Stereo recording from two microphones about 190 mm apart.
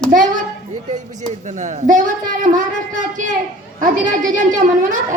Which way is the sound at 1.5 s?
40° right (ahead or behind).